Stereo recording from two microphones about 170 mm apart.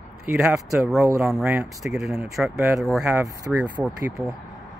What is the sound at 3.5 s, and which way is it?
Speech, 10° right (ahead or behind).